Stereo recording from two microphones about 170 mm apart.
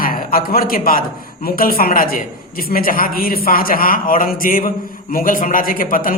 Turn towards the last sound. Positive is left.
turn(degrees=55)  # may be behind; listen again after turning